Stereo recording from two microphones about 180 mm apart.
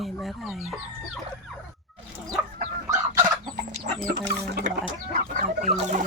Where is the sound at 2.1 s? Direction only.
15° right (ahead or behind).